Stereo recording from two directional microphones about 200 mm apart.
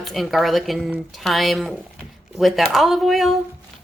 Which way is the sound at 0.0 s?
Centre (ahead or behind).